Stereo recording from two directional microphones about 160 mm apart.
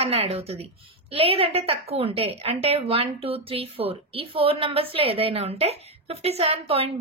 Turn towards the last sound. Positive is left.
turn(degrees=-40)  # may be behind; listen again after turning